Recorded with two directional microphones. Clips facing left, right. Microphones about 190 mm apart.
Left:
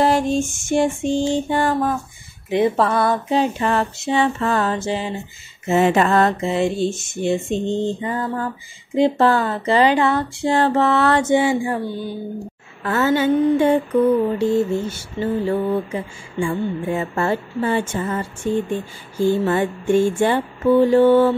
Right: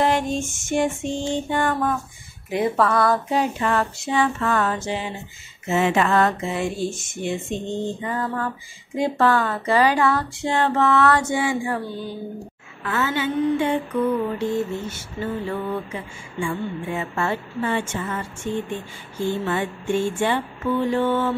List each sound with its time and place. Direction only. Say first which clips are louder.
0.0 s speech: left 4 dB; 35° left (ahead or behind)
12.8 s speech: left 6 dB; 40° left (ahead or behind)
14.4 s speech: left 6 dB; 30° left (ahead or behind)